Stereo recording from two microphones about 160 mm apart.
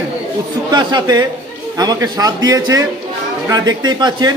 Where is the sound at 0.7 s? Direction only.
25° right (ahead or behind).